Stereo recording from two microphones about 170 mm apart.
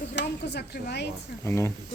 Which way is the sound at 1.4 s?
15° left (ahead or behind).